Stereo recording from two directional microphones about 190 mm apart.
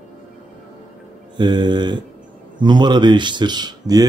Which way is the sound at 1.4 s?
25° right (ahead or behind).